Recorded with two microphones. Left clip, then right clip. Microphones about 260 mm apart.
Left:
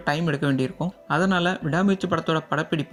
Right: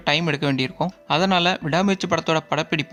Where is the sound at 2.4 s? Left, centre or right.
Centre.